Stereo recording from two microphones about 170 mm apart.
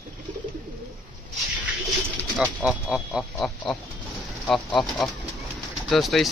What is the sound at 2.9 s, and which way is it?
Speech, centre (ahead or behind).